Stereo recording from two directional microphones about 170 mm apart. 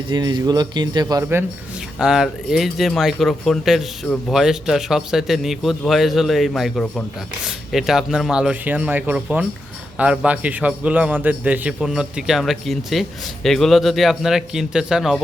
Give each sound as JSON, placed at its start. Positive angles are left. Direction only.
{"t": 0.1, "sound": "speech", "side_deg": -25}
{"t": 2.0, "sound": "a man's voice", "side_deg": -5}